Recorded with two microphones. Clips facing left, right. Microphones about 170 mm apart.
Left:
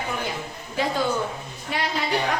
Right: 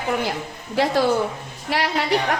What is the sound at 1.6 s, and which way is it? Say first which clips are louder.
Speech: right 4 dB; 75° right (ahead or behind).